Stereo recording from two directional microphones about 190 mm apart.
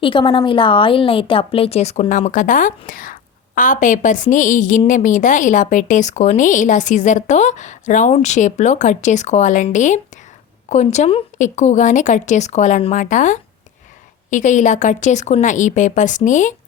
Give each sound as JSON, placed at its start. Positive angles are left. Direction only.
{"t": 0.0, "sound": "a woman's voice", "side_deg": 25}